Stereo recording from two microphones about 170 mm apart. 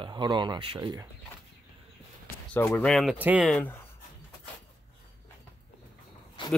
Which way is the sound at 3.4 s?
5° left (ahead or behind).